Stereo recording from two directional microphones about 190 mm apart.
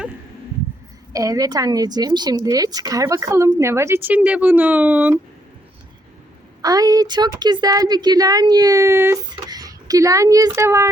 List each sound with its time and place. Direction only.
1.1 s a woman's voice: 20° right (ahead or behind)
6.6 s a woman's voice: 20° right (ahead or behind)